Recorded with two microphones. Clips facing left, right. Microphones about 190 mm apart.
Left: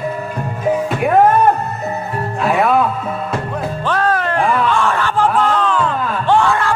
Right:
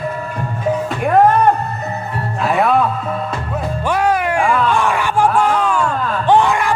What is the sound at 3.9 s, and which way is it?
Music, 15° right (ahead or behind).